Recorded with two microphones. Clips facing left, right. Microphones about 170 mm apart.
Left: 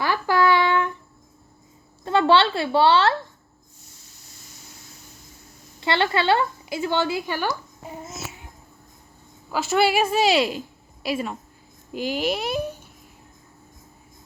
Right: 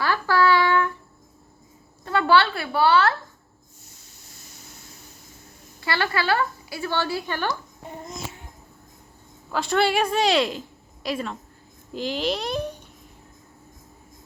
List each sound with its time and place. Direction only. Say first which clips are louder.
0.0 s child singing: left 1 dB; 15° left (ahead or behind)
2.0 s a woman's voice: left 2 dB; 25° left (ahead or behind)
5.8 s a woman's voice: left 4 dB; 25° left (ahead or behind); by 8.2 s 5° left (ahead or behind)
9.5 s a woman's voice: left 1 dB; 5° left (ahead or behind)